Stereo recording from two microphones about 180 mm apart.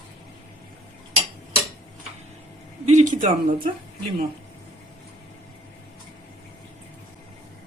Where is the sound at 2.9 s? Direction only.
45° right (ahead or behind).